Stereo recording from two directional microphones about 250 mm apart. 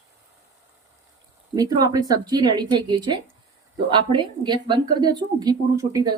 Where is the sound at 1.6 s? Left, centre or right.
Centre.